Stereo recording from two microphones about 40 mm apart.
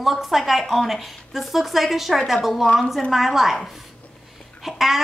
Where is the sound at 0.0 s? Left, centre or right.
Centre.